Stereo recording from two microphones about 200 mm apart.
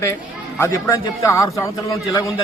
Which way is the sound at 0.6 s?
15° left (ahead or behind).